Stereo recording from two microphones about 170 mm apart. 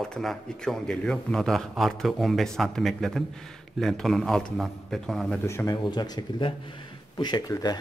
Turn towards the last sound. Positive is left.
turn(degrees=25)  # may be behind; listen again after turning